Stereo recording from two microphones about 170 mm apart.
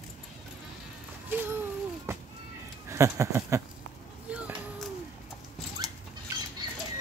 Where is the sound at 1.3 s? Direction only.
10° right (ahead or behind).